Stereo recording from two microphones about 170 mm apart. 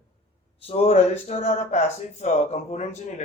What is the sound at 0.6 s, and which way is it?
A man's voice, 35° left (ahead or behind).